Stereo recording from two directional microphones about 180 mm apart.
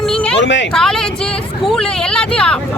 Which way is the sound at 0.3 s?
85° left.